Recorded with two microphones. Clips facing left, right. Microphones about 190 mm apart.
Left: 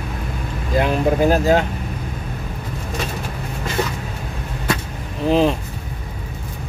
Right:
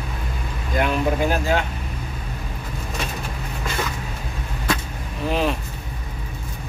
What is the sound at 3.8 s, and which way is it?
Vehicle, 35° left (ahead or behind).